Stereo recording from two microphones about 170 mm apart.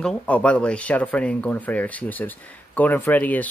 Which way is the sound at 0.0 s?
5° left (ahead or behind).